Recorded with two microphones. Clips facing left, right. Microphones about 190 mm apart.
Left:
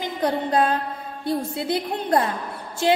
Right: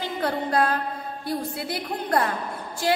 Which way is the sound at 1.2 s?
25° left (ahead or behind).